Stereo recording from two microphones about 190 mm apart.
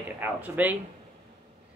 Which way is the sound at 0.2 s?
10° right (ahead or behind).